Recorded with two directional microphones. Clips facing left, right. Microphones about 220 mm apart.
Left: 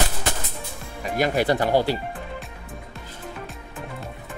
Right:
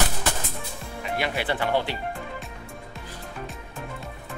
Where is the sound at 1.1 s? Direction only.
40° left (ahead or behind).